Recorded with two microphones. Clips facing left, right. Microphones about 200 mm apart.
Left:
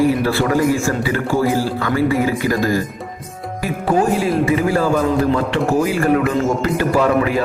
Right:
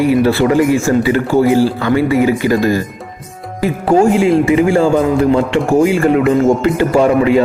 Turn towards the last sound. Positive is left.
turn(degrees=-25)  # may be behind; listen again after turning